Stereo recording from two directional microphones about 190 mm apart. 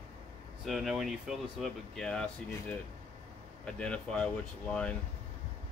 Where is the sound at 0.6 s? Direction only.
Centre (ahead or behind).